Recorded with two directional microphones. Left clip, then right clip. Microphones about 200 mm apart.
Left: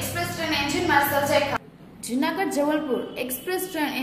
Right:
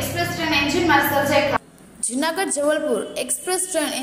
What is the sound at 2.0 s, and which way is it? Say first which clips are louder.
A woman's voice: right 3 dB; 30° right (ahead or behind).